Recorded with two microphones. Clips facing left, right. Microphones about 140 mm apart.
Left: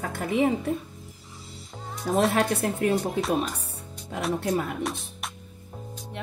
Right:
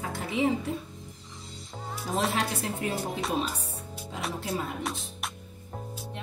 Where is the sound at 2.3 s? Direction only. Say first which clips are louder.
Left 6 dB; 55° left (ahead or behind).